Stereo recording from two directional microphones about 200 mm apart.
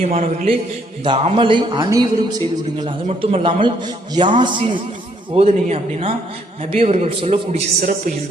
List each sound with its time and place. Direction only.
0.0 s a man's voice: 35° right (ahead or behind)
7.8 s a man's voice: 40° right (ahead or behind)